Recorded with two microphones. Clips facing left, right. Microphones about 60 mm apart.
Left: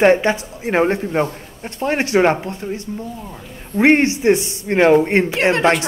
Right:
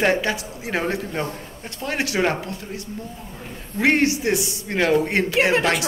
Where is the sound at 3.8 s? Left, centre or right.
Left.